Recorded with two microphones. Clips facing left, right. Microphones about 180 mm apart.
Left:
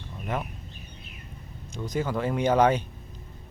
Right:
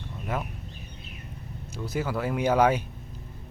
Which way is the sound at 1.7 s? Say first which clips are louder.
Left 1 dB; 5° right (ahead or behind).